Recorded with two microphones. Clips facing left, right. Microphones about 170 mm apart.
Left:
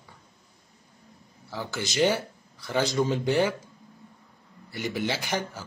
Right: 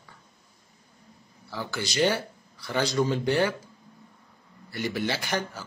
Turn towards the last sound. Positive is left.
turn(degrees=15)  # may be behind; listen again after turning